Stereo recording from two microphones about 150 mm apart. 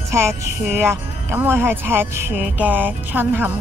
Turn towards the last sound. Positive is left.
turn(degrees=-15)  # may be behind; listen again after turning